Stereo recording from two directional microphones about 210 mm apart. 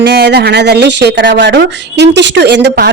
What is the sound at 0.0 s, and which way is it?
A woman's voice, 50° right (ahead or behind).